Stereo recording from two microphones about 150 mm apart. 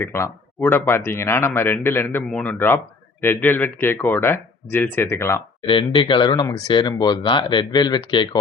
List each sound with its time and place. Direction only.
0.0 s speech: 15° left (ahead or behind)
5.6 s speech: 35° left (ahead or behind)